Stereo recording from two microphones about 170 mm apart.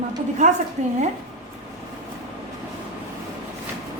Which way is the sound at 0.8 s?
40° right (ahead or behind).